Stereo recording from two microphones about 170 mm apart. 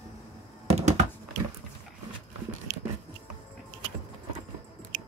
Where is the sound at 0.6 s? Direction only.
40° right (ahead or behind).